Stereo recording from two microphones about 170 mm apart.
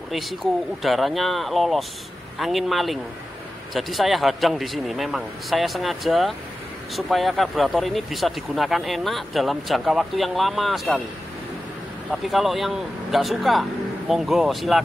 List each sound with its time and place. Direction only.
0.8 s speech: centre (ahead or behind)
12.1 s speech: centre (ahead or behind)